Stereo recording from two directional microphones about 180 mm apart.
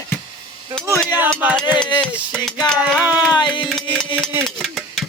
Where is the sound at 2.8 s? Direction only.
5° right (ahead or behind).